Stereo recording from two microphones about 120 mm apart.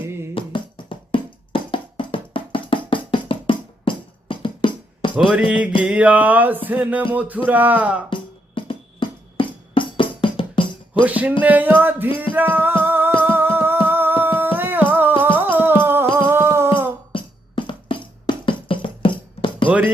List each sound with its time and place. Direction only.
0.0 s music: 20° right (ahead or behind)
0.3 s music: 45° left (ahead or behind)
5.3 s a sound: 10° right (ahead or behind)
8.1 s music: 45° left (ahead or behind)
11.0 s a sound: 10° right (ahead or behind)
12.3 s music: 15° right (ahead or behind)
17.1 s music: 45° left (ahead or behind)
19.6 s music: 15° right (ahead or behind)